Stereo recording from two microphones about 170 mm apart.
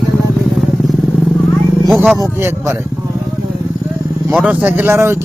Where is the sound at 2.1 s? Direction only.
15° right (ahead or behind).